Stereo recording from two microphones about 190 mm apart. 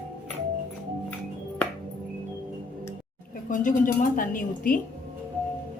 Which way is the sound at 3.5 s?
45° left (ahead or behind).